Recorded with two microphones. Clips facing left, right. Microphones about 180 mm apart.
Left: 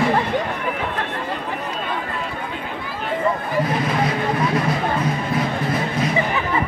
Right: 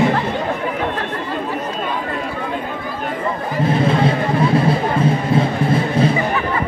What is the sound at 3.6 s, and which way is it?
Music, 30° right (ahead or behind).